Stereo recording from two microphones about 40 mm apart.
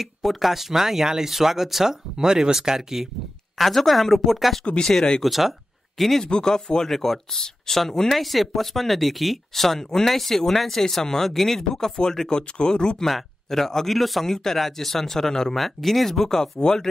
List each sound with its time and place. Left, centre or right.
0.0 s speech: centre
3.5 s speech: centre
4.8 s speech: centre
5.2 s speech: centre
6.2 s speech: centre
13.0 s speech: centre